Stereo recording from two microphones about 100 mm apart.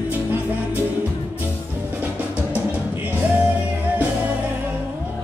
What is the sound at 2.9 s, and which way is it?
Music, 20° right (ahead or behind).